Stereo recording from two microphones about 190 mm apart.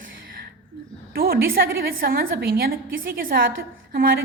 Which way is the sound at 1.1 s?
50° right (ahead or behind).